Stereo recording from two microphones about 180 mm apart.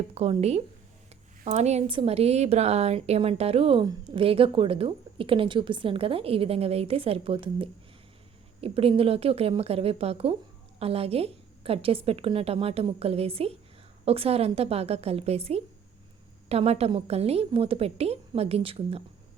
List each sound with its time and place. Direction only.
0.1 s a woman's voice: 35° right (ahead or behind)